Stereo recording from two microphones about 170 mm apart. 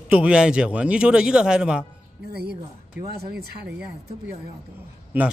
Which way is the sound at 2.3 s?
70° right (ahead or behind).